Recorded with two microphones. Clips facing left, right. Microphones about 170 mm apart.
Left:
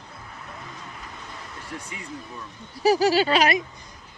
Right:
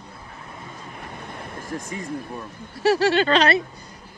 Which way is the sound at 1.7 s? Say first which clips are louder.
Right 7 dB; 40° right (ahead or behind).